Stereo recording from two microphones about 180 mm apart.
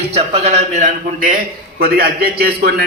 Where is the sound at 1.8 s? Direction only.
55° right (ahead or behind).